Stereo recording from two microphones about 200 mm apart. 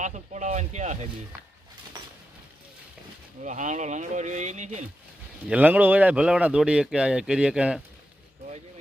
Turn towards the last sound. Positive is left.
turn(degrees=-5)  # may be behind; listen again after turning